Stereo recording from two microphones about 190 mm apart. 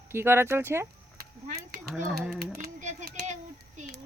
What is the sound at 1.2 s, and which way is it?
Livestock, 45° right (ahead or behind).